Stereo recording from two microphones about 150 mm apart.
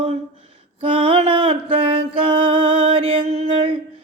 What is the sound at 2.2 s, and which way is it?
Music, 35° right (ahead or behind).